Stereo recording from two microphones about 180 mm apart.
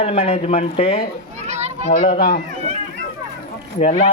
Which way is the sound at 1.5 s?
40° right (ahead or behind).